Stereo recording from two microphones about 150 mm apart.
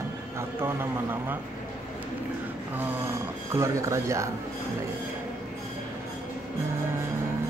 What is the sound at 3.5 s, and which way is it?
Speech, 20° right (ahead or behind).